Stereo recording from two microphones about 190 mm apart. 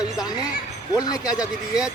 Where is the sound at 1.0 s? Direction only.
20° left (ahead or behind).